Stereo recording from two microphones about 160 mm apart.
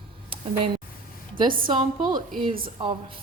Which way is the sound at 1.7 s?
25° right (ahead or behind).